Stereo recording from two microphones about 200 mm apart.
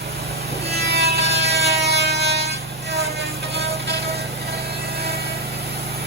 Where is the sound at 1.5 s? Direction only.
30° right (ahead or behind).